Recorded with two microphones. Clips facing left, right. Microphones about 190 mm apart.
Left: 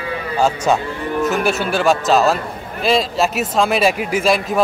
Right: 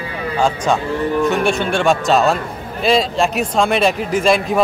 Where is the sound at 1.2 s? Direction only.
5° left (ahead or behind).